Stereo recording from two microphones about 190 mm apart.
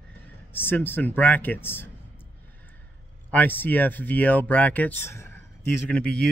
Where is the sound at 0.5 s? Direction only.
10° left (ahead or behind).